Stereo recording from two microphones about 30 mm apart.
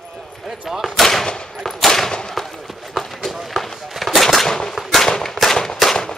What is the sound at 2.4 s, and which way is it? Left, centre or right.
Run, centre.